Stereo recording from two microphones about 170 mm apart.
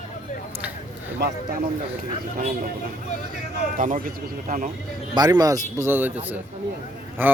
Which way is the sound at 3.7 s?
50° right (ahead or behind).